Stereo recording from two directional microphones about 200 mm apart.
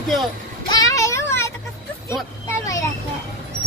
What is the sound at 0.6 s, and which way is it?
Child singing, 20° left (ahead or behind).